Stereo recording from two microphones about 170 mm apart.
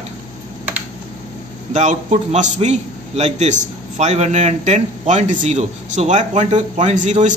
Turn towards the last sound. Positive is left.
turn(degrees=-45)  # may be behind; listen again after turning